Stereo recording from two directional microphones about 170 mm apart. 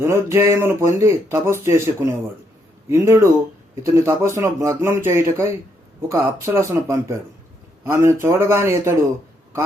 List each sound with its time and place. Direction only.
0.0 s speech: 15° right (ahead or behind)